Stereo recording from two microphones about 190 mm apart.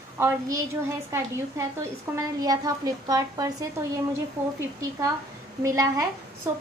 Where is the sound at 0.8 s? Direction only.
15° right (ahead or behind).